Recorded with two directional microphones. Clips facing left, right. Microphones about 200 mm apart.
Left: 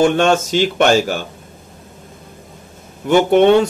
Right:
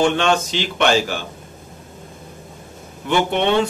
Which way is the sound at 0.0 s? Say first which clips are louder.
Left 4 dB; 45° left (ahead or behind).